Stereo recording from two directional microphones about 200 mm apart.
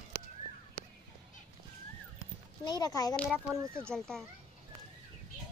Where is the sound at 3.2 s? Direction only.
5° right (ahead or behind).